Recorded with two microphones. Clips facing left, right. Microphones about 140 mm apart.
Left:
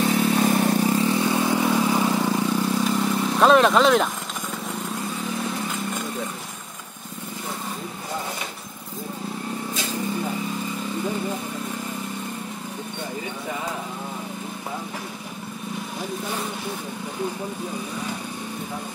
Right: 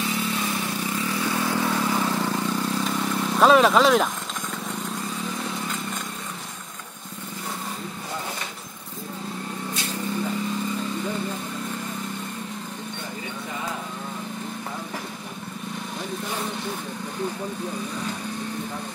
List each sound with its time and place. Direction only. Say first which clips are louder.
0.0 s vehicle: left 7 dB; 50° left (ahead or behind)
0.9 s vehicle: left 5 dB; 25° left (ahead or behind); by 4.1 s centre (ahead or behind)